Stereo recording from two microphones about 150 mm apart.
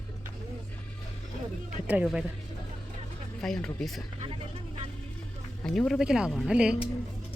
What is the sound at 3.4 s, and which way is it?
Speech, 5° left (ahead or behind).